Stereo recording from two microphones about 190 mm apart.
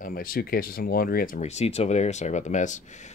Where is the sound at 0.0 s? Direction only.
50° left (ahead or behind).